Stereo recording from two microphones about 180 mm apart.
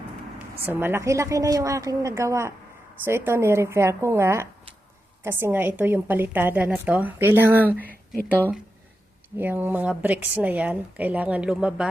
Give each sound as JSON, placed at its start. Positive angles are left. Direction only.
{"t": 0.6, "sound": "a woman's voice", "side_deg": -10}
{"t": 7.8, "sound": "speech", "side_deg": 10}
{"t": 9.4, "sound": "a woman's voice", "side_deg": -10}